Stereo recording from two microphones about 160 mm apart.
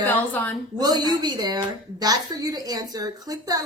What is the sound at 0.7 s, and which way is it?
A woman's voice, 25° right (ahead or behind).